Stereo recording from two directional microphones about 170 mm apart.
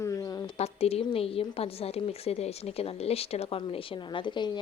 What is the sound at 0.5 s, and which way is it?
Speech, 35° left (ahead or behind).